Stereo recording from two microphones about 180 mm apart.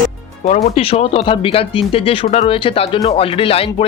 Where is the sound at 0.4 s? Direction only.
40° left (ahead or behind).